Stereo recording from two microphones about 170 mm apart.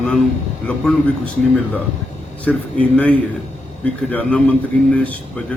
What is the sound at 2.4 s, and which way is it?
A man's voice, 10° left (ahead or behind).